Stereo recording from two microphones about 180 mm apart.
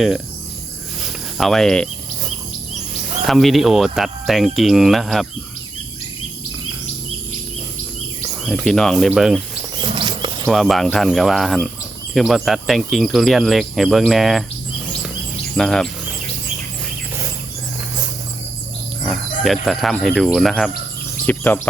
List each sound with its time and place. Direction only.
1.0 s cricket: centre (ahead or behind)
3.2 s speech: centre (ahead or behind)
8.6 s speech: 5° left (ahead or behind)
9.8 s wild animals: 25° right (ahead or behind)
10.4 s speech: centre (ahead or behind)
15.5 s speech: 5° left (ahead or behind)
19.0 s speech: centre (ahead or behind)